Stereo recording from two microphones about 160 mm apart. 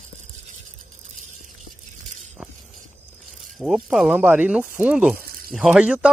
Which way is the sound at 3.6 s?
Centre (ahead or behind).